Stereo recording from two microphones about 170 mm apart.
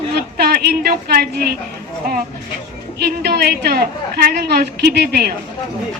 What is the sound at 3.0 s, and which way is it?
A woman's voice, 65° right (ahead or behind).